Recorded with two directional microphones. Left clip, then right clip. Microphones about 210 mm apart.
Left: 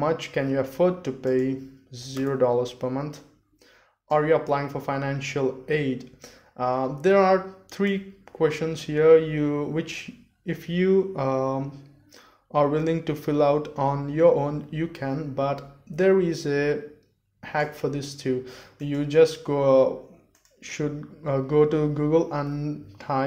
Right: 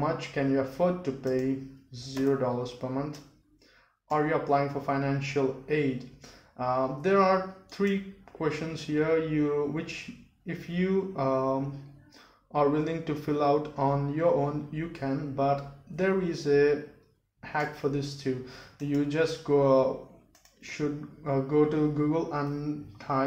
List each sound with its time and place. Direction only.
0.0 s speech: 45° left (ahead or behind)